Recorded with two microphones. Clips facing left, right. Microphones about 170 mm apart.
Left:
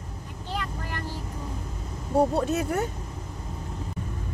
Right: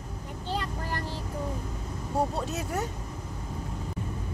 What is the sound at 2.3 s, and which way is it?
Speech, 60° left (ahead or behind).